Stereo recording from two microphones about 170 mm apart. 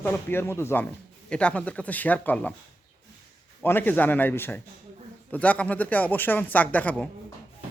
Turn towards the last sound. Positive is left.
turn(degrees=10)  # may be behind; listen again after turning